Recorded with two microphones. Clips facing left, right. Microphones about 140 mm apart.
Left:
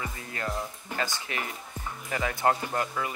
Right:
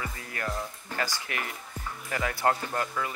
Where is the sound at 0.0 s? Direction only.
25° left (ahead or behind).